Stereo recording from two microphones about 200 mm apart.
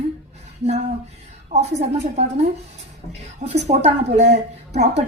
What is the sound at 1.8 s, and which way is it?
A woman's voice, 35° right (ahead or behind).